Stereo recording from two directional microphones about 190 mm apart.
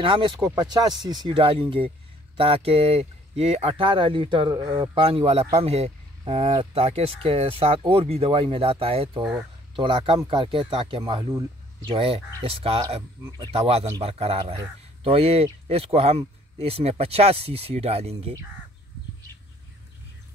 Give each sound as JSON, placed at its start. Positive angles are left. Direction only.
{"t": 0.0, "sound": "speech", "side_deg": -25}